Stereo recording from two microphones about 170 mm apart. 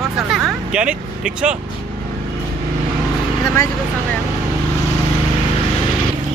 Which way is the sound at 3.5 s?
15° left (ahead or behind).